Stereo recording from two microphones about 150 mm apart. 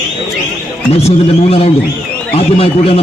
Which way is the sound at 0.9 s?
45° left (ahead or behind).